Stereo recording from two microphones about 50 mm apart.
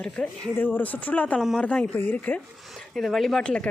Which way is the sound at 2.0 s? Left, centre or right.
Left.